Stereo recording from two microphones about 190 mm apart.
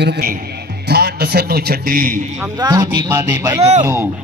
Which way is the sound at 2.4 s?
20° right (ahead or behind).